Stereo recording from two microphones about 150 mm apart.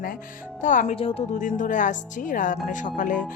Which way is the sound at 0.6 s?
60° left (ahead or behind).